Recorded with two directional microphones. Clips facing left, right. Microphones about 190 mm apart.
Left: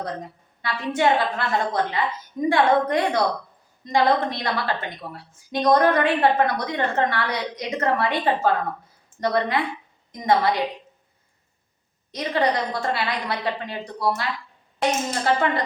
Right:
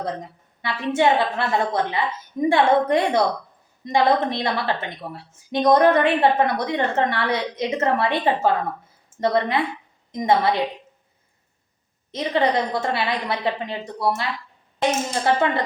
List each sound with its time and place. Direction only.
0.6 s a woman's voice: 25° right (ahead or behind)
12.1 s a woman's voice: 25° right (ahead or behind)